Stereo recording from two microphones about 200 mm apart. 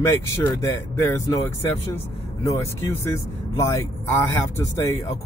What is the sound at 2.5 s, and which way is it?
Speech, 15° left (ahead or behind).